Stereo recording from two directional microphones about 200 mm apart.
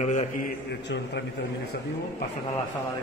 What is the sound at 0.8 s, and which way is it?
Speech, 60° left (ahead or behind).